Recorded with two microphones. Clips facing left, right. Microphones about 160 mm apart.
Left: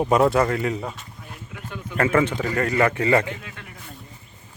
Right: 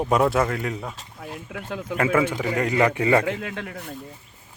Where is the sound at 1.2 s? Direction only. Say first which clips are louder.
Right 5 dB; 90° right.